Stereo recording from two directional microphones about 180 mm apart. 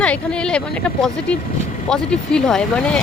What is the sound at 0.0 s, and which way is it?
Speech, 5° left (ahead or behind).